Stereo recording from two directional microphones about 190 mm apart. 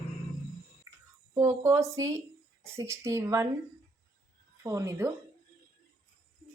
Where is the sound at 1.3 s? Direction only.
15° right (ahead or behind).